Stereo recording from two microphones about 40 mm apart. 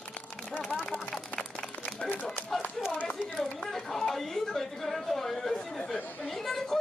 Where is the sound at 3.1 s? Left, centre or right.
Centre.